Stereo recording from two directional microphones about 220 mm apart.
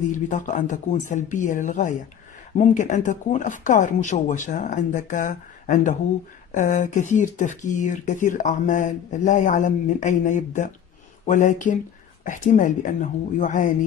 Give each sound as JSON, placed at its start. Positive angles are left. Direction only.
{"t": 0.1, "sound": "speech", "side_deg": 35}